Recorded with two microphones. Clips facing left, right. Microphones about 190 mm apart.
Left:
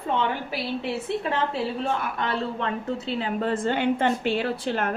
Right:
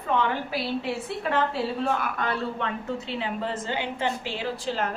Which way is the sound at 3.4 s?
55° left (ahead or behind).